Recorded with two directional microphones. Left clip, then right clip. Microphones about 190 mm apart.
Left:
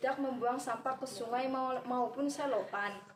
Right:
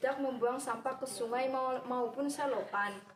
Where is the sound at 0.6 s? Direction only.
15° right (ahead or behind).